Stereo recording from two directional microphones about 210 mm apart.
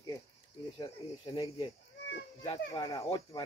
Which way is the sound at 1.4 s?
30° left (ahead or behind).